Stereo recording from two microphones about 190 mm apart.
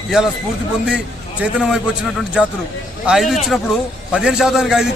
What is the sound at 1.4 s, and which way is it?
Speech, centre (ahead or behind).